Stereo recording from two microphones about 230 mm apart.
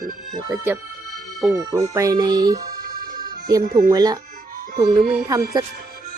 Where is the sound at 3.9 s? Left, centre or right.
Centre.